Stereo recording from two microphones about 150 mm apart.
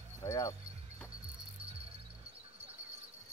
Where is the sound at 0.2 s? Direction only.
25° left (ahead or behind).